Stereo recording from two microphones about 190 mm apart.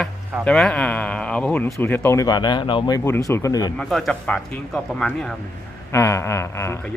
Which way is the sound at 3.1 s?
15° left (ahead or behind).